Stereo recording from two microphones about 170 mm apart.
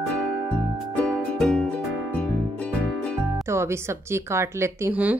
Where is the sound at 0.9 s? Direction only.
5° left (ahead or behind).